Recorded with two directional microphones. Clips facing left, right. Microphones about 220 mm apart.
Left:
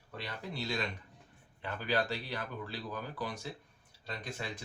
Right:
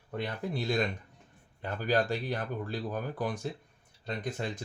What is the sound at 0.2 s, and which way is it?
Speech, 50° right (ahead or behind).